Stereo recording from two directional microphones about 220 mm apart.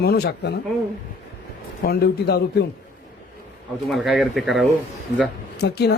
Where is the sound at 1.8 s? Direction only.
45° left (ahead or behind).